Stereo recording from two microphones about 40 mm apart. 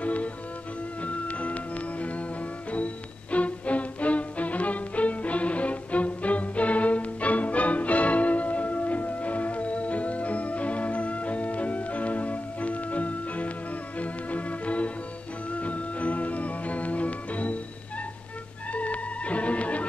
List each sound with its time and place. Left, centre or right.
0.0 s music: left
18.7 s music: left